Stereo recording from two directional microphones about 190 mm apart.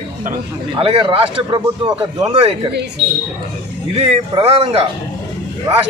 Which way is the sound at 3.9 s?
30° right (ahead or behind).